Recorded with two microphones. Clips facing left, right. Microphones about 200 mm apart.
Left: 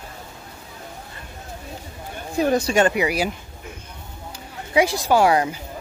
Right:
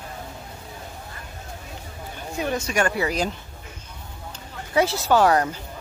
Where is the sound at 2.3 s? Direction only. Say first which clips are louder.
Left 6 dB; 35° left (ahead or behind); by 5.6 s 10° left (ahead or behind).